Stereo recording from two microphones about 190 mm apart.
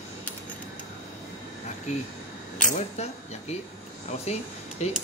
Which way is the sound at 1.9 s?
40° left (ahead or behind).